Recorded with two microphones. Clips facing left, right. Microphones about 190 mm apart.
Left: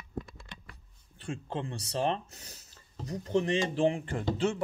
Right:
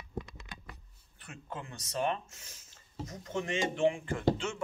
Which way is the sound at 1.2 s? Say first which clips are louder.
Left 8 dB; 30° left (ahead or behind).